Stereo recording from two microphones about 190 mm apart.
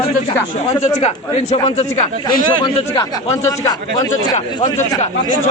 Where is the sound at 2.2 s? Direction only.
25° left (ahead or behind).